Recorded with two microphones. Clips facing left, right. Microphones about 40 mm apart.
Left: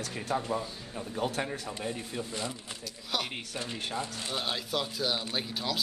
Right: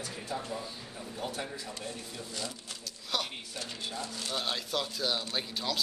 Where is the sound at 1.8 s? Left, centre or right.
Left.